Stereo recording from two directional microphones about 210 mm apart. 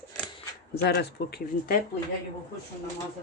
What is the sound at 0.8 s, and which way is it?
Speech, 50° left (ahead or behind).